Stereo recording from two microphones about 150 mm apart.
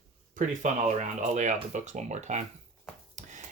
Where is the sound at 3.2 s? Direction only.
55° right (ahead or behind).